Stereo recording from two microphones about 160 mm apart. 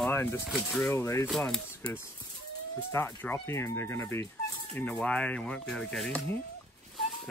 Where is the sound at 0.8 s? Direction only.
15° left (ahead or behind).